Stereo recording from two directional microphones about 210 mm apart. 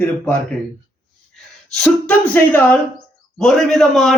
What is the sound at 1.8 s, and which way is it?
Speech, 5° left (ahead or behind).